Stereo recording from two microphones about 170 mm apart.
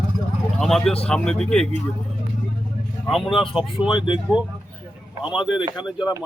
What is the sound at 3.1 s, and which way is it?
Speech, centre (ahead or behind).